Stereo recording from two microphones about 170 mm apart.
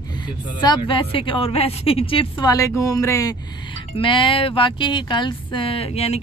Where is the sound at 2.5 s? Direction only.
20° left (ahead or behind).